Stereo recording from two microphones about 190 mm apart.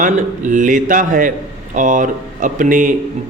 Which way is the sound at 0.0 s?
45° right (ahead or behind).